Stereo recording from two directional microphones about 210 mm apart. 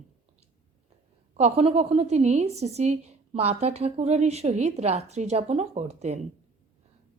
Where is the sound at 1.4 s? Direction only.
30° right (ahead or behind).